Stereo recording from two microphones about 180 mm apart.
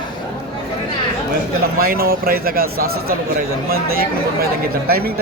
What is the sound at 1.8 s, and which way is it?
Speech, 55° right (ahead or behind).